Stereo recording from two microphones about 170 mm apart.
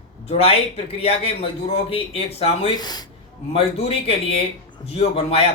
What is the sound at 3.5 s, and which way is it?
A man's voice, 35° left (ahead or behind).